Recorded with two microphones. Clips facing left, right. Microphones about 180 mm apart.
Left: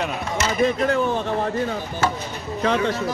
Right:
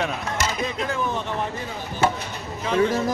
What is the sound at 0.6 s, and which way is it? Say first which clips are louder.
Speech: left 7 dB; 60° left (ahead or behind).